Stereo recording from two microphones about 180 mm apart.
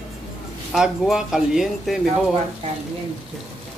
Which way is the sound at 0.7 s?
5° right (ahead or behind).